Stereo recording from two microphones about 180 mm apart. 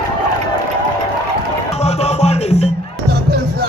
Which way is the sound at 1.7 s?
35° left (ahead or behind).